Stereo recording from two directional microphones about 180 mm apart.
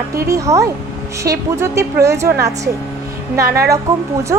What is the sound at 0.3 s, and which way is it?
A woman's voice, 15° right (ahead or behind).